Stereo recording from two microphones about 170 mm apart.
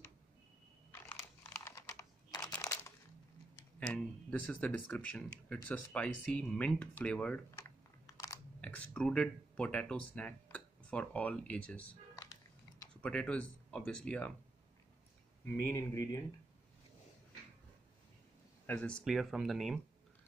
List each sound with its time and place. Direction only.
1.0 s computer keyboard: 15° left (ahead or behind)
2.5 s a sound: 10° left (ahead or behind)
3.8 s speech: 10° left (ahead or behind)
8.1 s crunch: 20° left (ahead or behind)
8.5 s speech: 10° left (ahead or behind)
13.0 s speech: 5° left (ahead or behind)
15.4 s speech: 15° left (ahead or behind)
18.7 s speech: 10° left (ahead or behind)